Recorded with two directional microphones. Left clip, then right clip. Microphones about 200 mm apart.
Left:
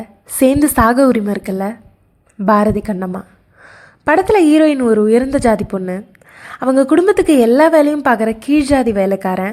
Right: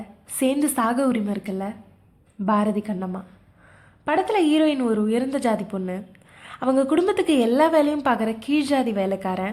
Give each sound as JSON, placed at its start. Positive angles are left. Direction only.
{"t": 0.3, "sound": "a woman's voice", "side_deg": 35}